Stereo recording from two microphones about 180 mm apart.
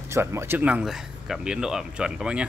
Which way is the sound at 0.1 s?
15° right (ahead or behind).